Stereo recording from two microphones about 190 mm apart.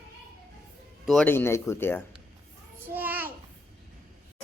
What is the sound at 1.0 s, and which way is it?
Speech, centre (ahead or behind).